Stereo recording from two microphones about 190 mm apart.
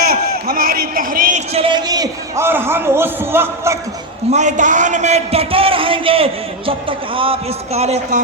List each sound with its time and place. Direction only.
0.0 s a man's voice: 50° right (ahead or behind)
1.5 s a man's voice: 25° right (ahead or behind)
4.3 s a man's voice: 40° right (ahead or behind)